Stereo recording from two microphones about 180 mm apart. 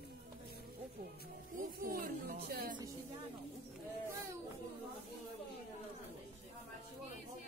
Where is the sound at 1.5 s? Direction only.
50° right (ahead or behind).